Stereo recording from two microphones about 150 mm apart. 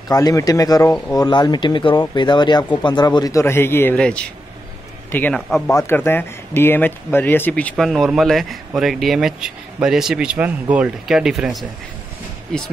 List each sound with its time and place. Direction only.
0.1 s speech: 25° left (ahead or behind); by 12.7 s 5° left (ahead or behind)